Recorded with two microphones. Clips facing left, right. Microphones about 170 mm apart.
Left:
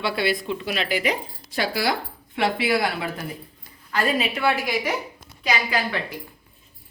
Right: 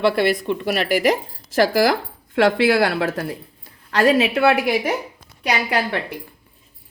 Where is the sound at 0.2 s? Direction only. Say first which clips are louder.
Right 5 dB; 60° right (ahead or behind).